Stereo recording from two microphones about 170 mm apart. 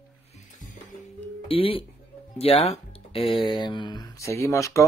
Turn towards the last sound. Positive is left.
turn(degrees=20)  # may be behind; listen again after turning